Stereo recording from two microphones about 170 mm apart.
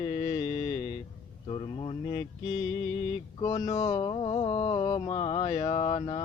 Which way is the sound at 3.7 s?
25° left (ahead or behind).